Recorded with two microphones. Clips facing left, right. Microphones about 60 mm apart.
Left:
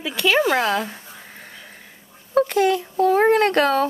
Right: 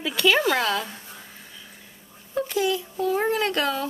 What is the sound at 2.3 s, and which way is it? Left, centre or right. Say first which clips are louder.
A child's voice: left 7 dB; left.